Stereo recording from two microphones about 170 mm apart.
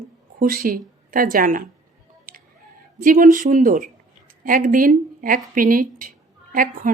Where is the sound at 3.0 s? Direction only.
55° right (ahead or behind).